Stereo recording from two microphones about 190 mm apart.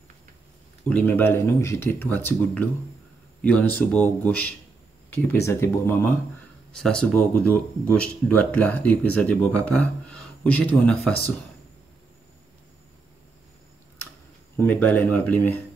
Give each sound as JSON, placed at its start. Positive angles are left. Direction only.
{"t": 0.8, "sound": "speech", "side_deg": 10}
{"t": 14.6, "sound": "speech", "side_deg": 10}